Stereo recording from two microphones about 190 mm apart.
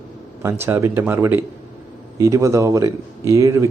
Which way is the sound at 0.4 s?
10° right (ahead or behind).